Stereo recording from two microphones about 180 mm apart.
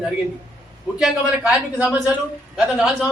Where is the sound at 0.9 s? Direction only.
5° right (ahead or behind).